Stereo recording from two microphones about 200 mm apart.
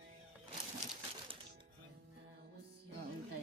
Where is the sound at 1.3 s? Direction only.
25° right (ahead or behind).